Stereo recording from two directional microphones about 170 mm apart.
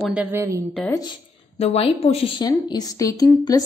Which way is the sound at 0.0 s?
5° right (ahead or behind).